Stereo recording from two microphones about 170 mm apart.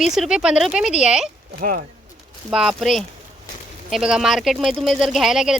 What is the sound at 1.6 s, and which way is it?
Speech, 55° right (ahead or behind).